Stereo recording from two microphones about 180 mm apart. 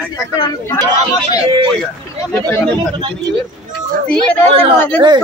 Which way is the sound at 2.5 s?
5° left (ahead or behind).